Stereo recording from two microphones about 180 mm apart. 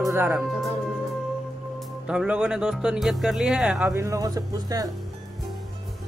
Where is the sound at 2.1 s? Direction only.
5° right (ahead or behind).